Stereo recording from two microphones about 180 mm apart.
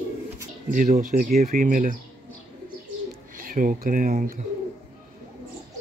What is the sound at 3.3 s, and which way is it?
Speech, 50° right (ahead or behind).